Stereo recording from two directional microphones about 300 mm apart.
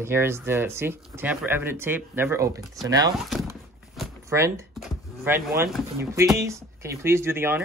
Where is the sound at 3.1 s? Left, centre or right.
Centre.